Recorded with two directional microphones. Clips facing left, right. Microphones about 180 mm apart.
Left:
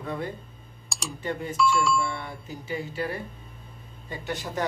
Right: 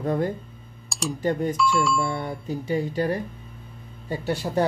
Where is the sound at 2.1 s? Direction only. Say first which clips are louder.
Right 8 dB; 40° right (ahead or behind).